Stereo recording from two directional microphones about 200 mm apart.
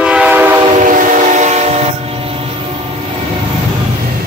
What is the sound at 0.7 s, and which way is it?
Train, 40° right (ahead or behind).